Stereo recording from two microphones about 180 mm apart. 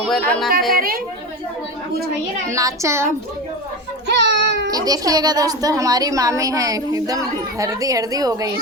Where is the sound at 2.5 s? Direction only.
15° right (ahead or behind).